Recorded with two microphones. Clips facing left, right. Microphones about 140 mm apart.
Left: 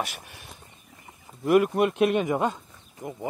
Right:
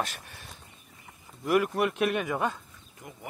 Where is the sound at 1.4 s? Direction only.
25° left (ahead or behind).